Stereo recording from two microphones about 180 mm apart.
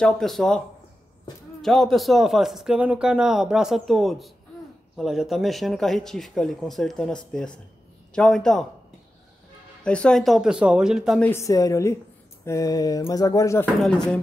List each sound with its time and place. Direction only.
0.0 s speech: centre (ahead or behind)
1.6 s speech: centre (ahead or behind)
9.8 s speech: 5° left (ahead or behind)
11.2 s a woman's voice: 15° left (ahead or behind)
12.4 s a sound: 20° left (ahead or behind)
13.8 s speech: 5° left (ahead or behind)